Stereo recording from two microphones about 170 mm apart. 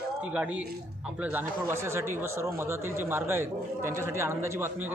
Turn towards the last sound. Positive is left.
turn(degrees=-15)  # may be behind; listen again after turning